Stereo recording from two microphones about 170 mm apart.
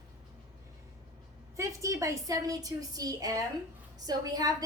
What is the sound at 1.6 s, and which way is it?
A woman's voice, 20° right (ahead or behind).